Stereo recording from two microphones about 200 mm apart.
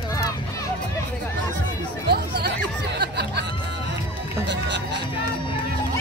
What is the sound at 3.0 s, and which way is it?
Music, 55° right (ahead or behind).